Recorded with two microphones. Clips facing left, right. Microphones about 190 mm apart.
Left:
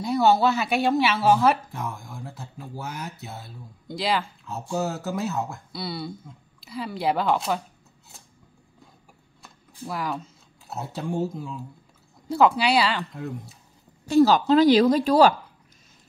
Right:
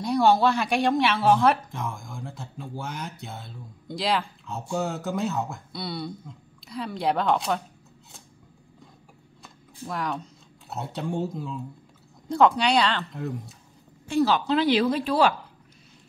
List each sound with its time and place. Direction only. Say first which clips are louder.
0.0 s speech: even; 5° left (ahead or behind)
9.4 s speech: left 1 dB; 5° left (ahead or behind)
14.0 s speech: left 5 dB; 40° left (ahead or behind)